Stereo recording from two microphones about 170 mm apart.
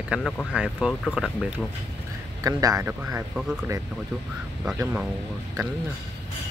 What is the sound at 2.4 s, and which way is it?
Speech, 20° right (ahead or behind).